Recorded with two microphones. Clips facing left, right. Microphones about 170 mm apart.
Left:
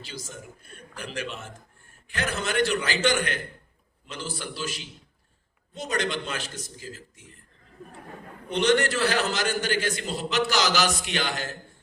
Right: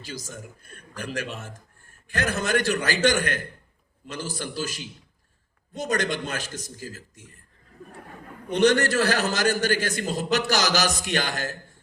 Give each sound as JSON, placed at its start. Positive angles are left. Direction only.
{"t": 0.0, "sound": "a man's voice", "side_deg": -40}
{"t": 8.4, "sound": "a man's voice", "side_deg": -45}